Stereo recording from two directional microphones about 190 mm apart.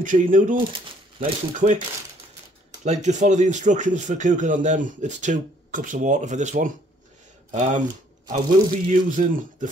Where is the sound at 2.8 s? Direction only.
35° right (ahead or behind).